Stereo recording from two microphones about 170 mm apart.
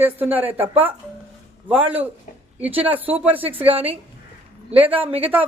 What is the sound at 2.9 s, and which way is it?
Speech, 10° right (ahead or behind).